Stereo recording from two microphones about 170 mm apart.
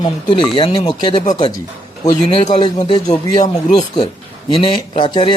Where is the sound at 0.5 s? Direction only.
30° left (ahead or behind).